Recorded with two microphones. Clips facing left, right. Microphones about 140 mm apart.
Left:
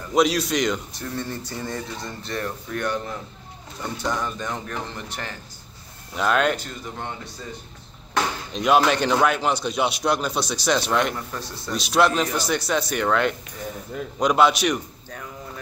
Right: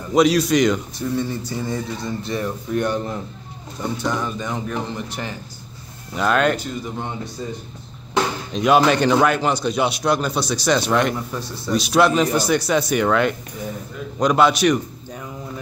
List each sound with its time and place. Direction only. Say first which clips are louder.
0.1 s speech: right 5 dB; centre (ahead or behind)
2.8 s a man's voice: right 3 dB; 25° right (ahead or behind)
4.0 s speech: right 1 dB; 5° right (ahead or behind)
6.1 s speech: right 3 dB; centre (ahead or behind)
8.5 s speech: right 3 dB; centre (ahead or behind)
15.0 s a sound: right 4 dB; 15° right (ahead or behind)